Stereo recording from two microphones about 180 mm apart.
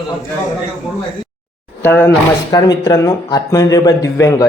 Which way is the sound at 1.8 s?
10° left (ahead or behind).